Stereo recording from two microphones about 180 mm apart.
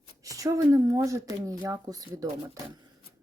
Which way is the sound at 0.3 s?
20° right (ahead or behind).